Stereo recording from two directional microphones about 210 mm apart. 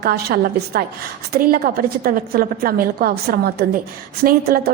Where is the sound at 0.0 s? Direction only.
50° right (ahead or behind).